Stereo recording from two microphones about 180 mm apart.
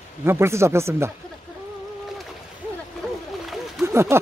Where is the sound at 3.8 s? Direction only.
15° right (ahead or behind).